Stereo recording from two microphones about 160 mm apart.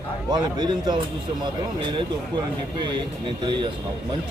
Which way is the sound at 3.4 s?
30° right (ahead or behind).